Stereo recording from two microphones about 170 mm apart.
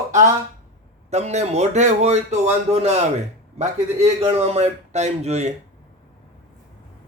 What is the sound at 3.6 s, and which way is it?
A man's voice, 40° right (ahead or behind).